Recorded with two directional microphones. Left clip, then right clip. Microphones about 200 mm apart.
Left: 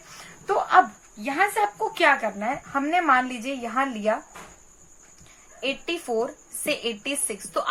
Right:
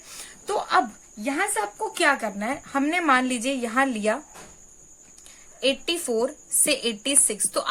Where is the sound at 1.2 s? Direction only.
40° right (ahead or behind).